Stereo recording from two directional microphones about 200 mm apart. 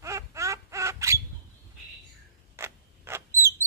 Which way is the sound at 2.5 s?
15° right (ahead or behind).